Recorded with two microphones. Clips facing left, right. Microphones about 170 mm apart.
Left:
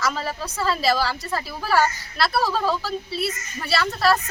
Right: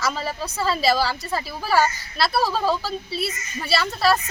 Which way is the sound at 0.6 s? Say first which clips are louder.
Right 1 dB; 25° right (ahead or behind).